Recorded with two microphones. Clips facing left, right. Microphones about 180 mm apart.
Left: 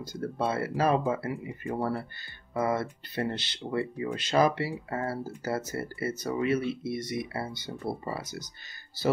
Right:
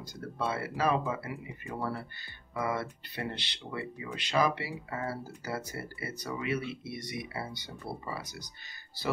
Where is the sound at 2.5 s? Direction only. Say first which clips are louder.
Left 5 dB; 40° left (ahead or behind).